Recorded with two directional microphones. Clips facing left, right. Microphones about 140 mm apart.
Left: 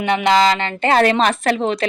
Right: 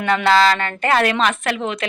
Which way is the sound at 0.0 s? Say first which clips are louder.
Even; 20° left (ahead or behind).